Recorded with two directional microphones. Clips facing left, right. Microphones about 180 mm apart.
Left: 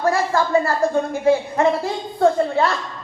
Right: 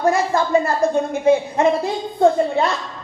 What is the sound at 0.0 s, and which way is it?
A woman's voice, 20° right (ahead or behind).